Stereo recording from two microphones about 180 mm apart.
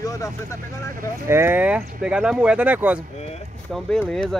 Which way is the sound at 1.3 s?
10° right (ahead or behind).